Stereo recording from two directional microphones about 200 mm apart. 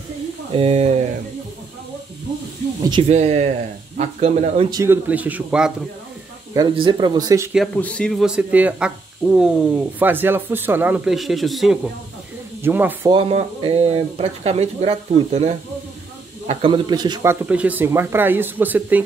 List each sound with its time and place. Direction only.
0.5 s speech: 30° right (ahead or behind)
2.8 s speech: 20° right (ahead or behind)
3.1 s speech: 35° right (ahead or behind)
4.7 s speech: 10° right (ahead or behind)
6.5 s speech: 20° right (ahead or behind)
7.5 s speech: 5° left (ahead or behind)
13.1 s speech: 30° right (ahead or behind); by 19.0 s 10° right (ahead or behind)